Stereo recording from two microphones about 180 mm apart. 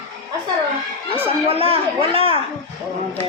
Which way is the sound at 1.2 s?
30° right (ahead or behind).